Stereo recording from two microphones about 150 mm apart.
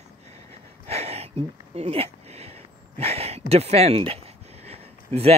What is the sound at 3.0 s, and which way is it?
Speech, 45° right (ahead or behind).